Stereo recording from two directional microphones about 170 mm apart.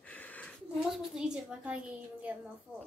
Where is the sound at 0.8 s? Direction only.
Centre (ahead or behind).